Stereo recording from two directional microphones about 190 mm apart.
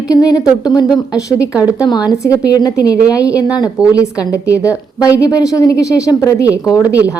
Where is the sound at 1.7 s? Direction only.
20° left (ahead or behind).